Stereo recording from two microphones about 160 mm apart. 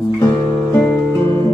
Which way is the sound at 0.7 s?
10° left (ahead or behind).